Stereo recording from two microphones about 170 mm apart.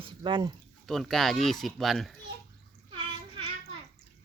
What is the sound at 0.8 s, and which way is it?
Speech, centre (ahead or behind).